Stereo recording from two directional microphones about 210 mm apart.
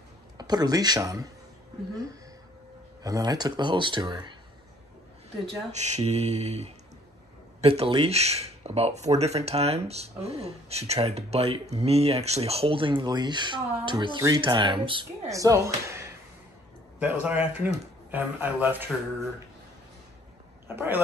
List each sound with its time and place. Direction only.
0.4 s speech: 20° right (ahead or behind)
3.0 s speech: 15° right (ahead or behind)
5.7 s mantra: 35° right (ahead or behind)
7.6 s speech: 25° right (ahead or behind); by 18.9 s 10° right (ahead or behind)
20.6 s speech: 10° right (ahead or behind)